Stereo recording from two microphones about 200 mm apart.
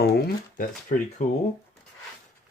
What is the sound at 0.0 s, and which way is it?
Speech, 45° left (ahead or behind).